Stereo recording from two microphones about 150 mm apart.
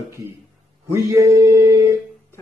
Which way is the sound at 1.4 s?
20° right (ahead or behind).